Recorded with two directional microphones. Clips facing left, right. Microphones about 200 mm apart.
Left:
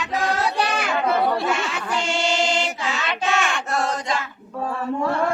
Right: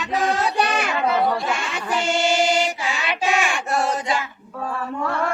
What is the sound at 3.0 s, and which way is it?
Child singing, 15° right (ahead or behind).